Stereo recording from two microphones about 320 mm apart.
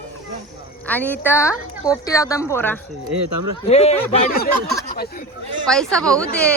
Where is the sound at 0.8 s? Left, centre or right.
Centre.